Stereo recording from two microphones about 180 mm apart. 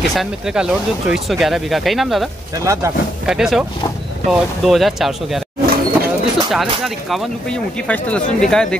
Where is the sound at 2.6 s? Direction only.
15° right (ahead or behind).